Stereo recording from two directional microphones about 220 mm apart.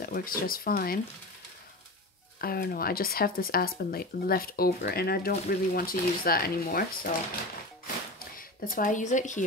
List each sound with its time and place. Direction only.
0.0 s speech: 40° left (ahead or behind)
2.4 s speech: 40° left (ahead or behind)
8.6 s speech: 35° left (ahead or behind)